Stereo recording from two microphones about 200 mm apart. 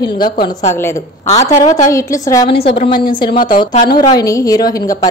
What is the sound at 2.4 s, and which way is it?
A woman's voice, 25° left (ahead or behind).